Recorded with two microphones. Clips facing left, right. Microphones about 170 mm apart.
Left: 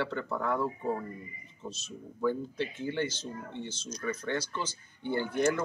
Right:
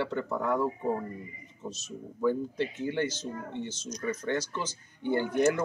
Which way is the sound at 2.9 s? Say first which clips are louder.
Right 2 dB; 45° right (ahead or behind).